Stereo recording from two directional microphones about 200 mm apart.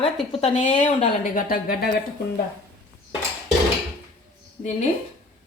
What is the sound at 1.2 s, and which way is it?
Speech, 45° left (ahead or behind).